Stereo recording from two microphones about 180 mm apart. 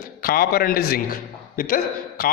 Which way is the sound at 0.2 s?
55° left (ahead or behind).